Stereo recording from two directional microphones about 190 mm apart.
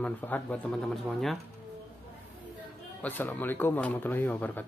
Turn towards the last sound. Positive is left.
turn(degrees=10)  # may be behind; listen again after turning